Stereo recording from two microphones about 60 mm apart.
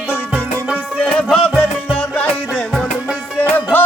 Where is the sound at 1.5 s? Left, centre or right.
Right.